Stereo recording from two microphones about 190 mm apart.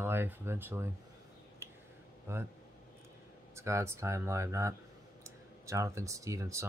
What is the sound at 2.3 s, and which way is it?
Speech, 15° right (ahead or behind).